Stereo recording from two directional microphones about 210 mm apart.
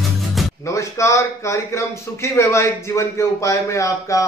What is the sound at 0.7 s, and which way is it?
A man's voice, 15° left (ahead or behind).